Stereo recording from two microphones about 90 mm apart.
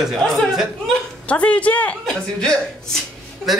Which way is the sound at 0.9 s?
15° left (ahead or behind).